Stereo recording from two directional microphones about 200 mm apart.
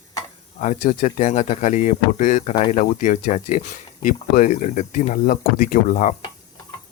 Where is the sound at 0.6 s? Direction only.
40° left (ahead or behind).